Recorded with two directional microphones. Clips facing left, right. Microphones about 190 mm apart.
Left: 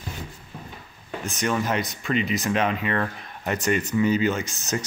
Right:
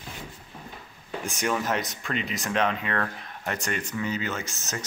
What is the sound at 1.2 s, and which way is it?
Speech, 10° right (ahead or behind).